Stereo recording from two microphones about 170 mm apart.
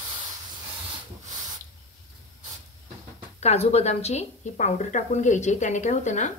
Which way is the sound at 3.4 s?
40° left (ahead or behind).